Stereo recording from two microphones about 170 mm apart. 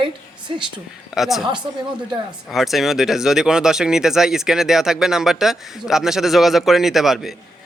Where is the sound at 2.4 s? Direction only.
Centre (ahead or behind).